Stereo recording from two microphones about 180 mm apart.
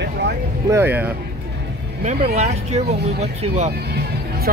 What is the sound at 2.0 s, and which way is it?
Speech, 35° right (ahead or behind).